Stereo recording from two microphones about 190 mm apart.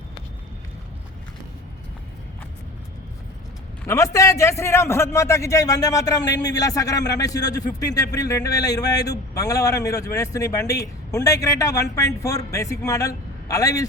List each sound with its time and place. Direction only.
3.8 s speech: 15° left (ahead or behind)